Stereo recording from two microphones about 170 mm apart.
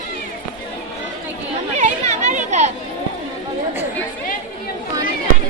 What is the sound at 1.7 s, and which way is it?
Chatter, 45° right (ahead or behind).